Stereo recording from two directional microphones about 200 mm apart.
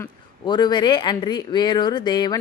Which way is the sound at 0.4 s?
20° left (ahead or behind).